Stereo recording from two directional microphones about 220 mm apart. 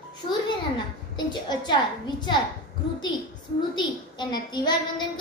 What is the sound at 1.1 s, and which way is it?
A woman's voice, 20° left (ahead or behind).